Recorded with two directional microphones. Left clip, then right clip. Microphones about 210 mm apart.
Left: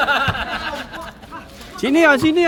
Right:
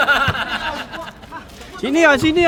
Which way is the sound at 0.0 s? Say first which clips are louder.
Right 2 dB; 35° right (ahead or behind).